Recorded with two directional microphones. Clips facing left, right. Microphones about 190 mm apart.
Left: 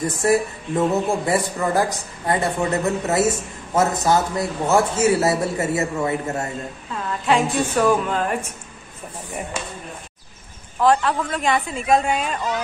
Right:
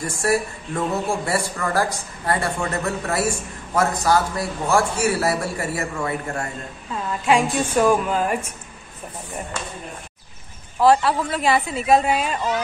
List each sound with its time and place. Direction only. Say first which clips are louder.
0.0 s a man's voice: left 3 dB; 20° left (ahead or behind)
7.2 s speech: even; 10° right (ahead or behind)
10.8 s speech: right 1 dB; 5° right (ahead or behind)